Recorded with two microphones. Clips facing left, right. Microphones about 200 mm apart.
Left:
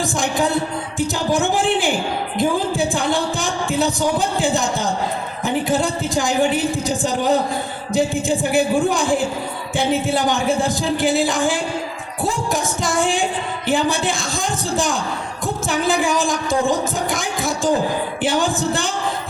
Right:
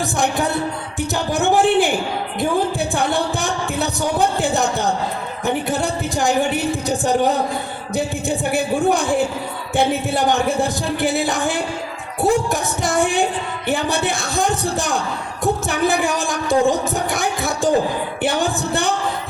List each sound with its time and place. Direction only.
0.0 s music: 60° right (ahead or behind)
0.9 s a sound: 65° right (ahead or behind)
2.4 s music: 60° right (ahead or behind)
5.5 s a sound: 60° right (ahead or behind)
7.9 s music: 65° right (ahead or behind)
13.7 s a woman's voice: 60° right (ahead or behind)
15.4 s music: 60° right (ahead or behind)